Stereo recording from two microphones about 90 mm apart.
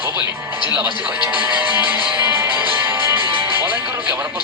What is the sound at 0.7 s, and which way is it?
Speech, 20° right (ahead or behind).